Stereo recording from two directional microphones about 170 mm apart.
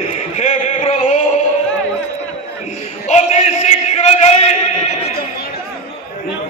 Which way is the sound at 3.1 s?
40° left (ahead or behind).